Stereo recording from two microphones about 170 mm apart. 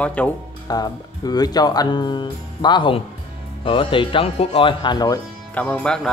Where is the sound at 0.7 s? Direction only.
25° left (ahead or behind).